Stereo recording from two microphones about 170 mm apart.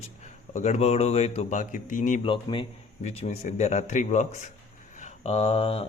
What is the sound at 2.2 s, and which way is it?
A man's voice, 30° left (ahead or behind).